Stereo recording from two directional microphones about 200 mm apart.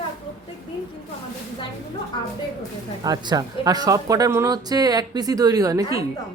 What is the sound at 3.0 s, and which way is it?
Speech, 20° right (ahead or behind).